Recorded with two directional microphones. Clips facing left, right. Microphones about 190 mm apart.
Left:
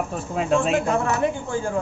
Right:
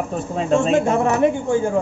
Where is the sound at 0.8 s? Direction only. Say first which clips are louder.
Right 5 dB; 20° right (ahead or behind).